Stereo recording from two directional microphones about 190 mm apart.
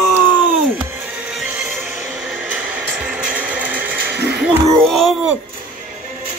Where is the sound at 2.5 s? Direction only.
5° right (ahead or behind).